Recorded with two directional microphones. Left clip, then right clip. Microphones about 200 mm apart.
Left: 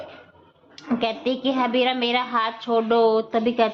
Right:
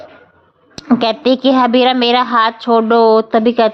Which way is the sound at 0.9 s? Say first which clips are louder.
Right 11 dB; 55° right (ahead or behind).